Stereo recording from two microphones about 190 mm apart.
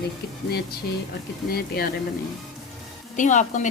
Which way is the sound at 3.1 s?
40° left (ahead or behind).